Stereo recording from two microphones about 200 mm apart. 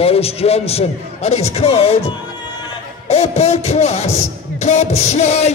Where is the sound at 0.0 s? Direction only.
30° left (ahead or behind).